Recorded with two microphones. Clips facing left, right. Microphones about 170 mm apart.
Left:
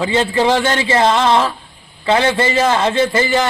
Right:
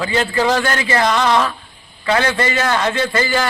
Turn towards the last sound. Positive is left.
turn(degrees=25)  # may be behind; listen again after turning